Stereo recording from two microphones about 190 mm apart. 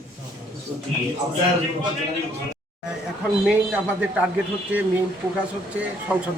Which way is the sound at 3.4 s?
5° right (ahead or behind).